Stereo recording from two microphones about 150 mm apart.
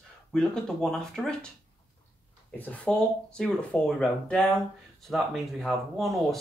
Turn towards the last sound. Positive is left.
turn(degrees=0)  # may be behind; listen again after turning